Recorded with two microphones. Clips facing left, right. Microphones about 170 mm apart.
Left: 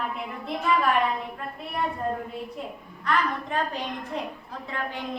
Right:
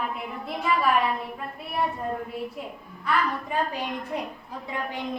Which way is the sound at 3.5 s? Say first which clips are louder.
Right 1 dB; 10° right (ahead or behind).